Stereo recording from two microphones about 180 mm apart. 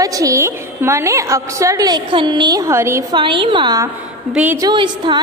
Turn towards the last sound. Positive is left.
turn(degrees=-25)  # may be behind; listen again after turning